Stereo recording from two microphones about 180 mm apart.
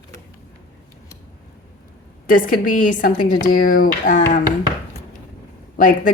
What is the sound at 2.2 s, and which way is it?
Speech, 50° left (ahead or behind).